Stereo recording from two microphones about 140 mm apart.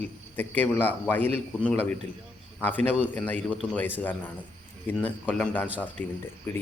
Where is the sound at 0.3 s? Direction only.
15° left (ahead or behind).